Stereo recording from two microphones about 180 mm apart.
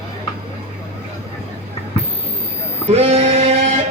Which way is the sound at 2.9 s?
35° right (ahead or behind).